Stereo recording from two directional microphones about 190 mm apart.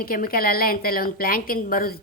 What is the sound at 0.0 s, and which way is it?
A woman's voice, 50° left (ahead or behind).